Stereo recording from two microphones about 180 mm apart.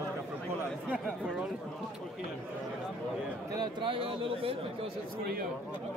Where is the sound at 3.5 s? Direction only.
25° right (ahead or behind).